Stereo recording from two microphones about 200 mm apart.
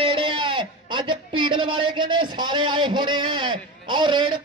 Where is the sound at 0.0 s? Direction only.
25° right (ahead or behind).